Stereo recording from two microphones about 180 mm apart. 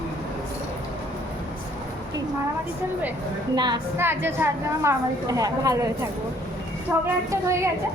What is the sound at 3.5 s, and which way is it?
Speech, 25° right (ahead or behind).